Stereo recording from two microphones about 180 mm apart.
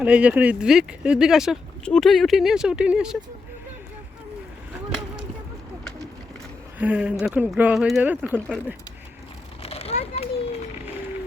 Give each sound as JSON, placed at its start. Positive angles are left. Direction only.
{"t": 0.0, "sound": "speech", "side_deg": -5}
{"t": 6.7, "sound": "speech", "side_deg": -5}
{"t": 8.4, "sound": "speech", "side_deg": 5}
{"t": 9.6, "sound": "a sound", "side_deg": 35}